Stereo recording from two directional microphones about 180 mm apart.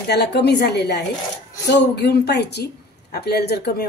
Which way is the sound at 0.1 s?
65° left (ahead or behind).